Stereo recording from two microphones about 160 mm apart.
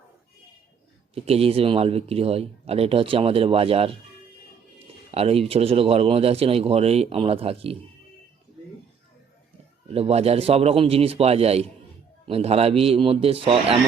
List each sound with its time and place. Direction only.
1.1 s speech: 40° right (ahead or behind)
5.1 s speech: 40° right (ahead or behind)
9.9 s speech: 40° right (ahead or behind)